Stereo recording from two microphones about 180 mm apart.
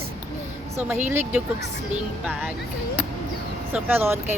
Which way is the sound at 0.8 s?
10° right (ahead or behind).